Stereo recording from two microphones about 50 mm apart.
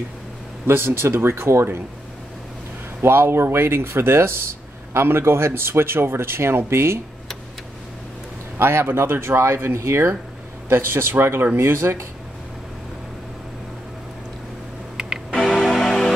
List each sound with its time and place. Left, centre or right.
0.7 s speech: right
3.0 s speech: right
8.5 s speech: right
15.0 s music: centre
15.4 s music: centre